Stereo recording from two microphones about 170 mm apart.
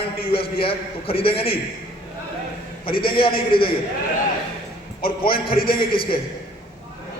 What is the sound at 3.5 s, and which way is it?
Speech, 60° left (ahead or behind).